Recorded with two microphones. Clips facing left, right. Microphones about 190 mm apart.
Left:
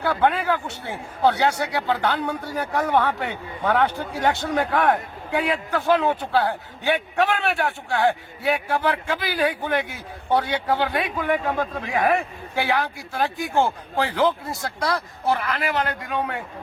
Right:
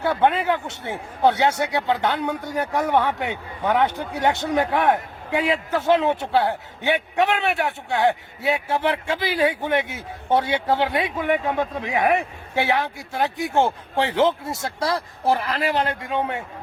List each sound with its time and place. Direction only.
0.0 s speech: 20° right (ahead or behind)